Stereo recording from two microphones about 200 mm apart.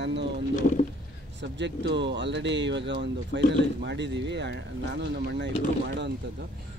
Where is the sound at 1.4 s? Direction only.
60° right (ahead or behind).